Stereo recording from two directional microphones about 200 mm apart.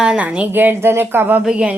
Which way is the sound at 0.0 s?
5° right (ahead or behind).